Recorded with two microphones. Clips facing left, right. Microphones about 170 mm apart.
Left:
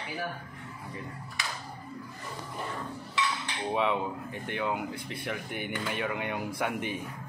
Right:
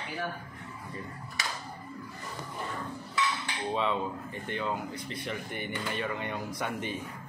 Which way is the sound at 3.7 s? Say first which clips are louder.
Left 2 dB; 15° left (ahead or behind).